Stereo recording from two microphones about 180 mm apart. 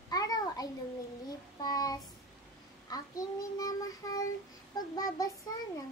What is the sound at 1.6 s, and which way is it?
Child singing, 20° left (ahead or behind).